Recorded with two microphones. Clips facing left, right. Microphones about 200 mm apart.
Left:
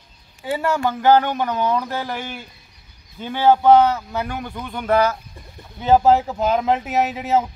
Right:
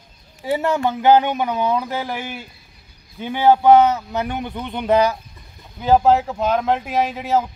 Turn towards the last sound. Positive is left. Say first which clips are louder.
# even
turn(degrees=0)  # may be behind; listen again after turning